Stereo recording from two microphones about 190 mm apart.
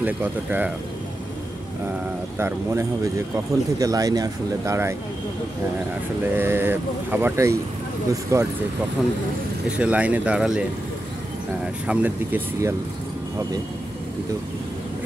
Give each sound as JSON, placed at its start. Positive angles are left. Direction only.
{"t": 0.0, "sound": "speech", "side_deg": -10}
{"t": 2.3, "sound": "speech", "side_deg": -15}
{"t": 6.3, "sound": "speech", "side_deg": -10}
{"t": 9.0, "sound": "speech", "side_deg": -5}
{"t": 11.9, "sound": "speech", "side_deg": -10}